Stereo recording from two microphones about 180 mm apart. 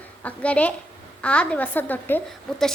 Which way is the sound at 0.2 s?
10° left (ahead or behind).